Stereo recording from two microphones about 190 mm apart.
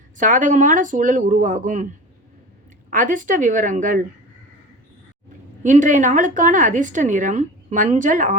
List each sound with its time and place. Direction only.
0.2 s speech: 45° right (ahead or behind)
2.9 s speech: 45° right (ahead or behind)
5.6 s a woman's voice: 40° right (ahead or behind)